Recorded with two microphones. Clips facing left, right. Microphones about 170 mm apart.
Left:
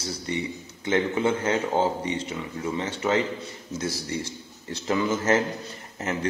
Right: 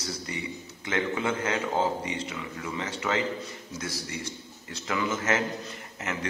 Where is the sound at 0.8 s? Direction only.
25° left (ahead or behind).